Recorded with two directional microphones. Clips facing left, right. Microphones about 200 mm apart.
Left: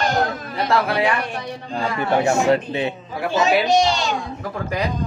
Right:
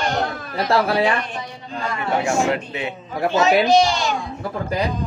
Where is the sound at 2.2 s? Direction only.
35° left (ahead or behind).